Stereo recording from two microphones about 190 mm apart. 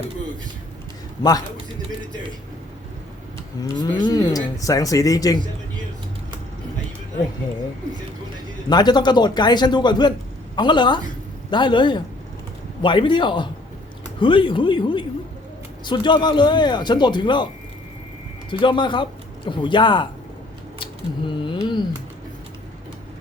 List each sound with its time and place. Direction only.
3.6 s speech: 25° left (ahead or behind)
8.7 s speech: 20° left (ahead or behind)
18.6 s speech: 25° left (ahead or behind)
20.7 s a sound: 25° left (ahead or behind)